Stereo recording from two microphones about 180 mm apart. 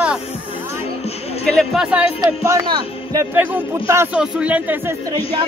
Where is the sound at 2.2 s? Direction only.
20° right (ahead or behind).